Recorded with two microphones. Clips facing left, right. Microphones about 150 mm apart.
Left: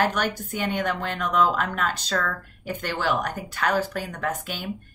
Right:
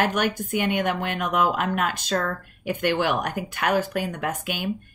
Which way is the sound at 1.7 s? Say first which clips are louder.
Right 2 dB; 50° right (ahead or behind).